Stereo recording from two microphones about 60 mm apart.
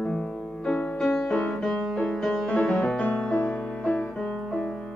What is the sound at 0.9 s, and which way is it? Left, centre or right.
Music, centre.